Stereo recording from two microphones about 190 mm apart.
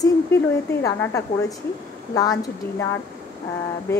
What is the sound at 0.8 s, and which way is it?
A woman's voice, 15° left (ahead or behind).